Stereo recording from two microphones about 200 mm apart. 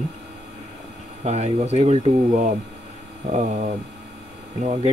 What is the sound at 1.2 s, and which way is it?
Speech, 35° right (ahead or behind).